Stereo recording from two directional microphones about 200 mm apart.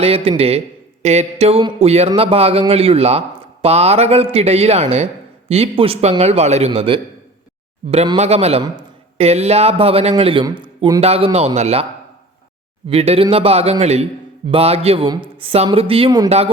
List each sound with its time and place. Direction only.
0.0 s a man's voice: 30° right (ahead or behind)
12.9 s a man's voice: 30° right (ahead or behind)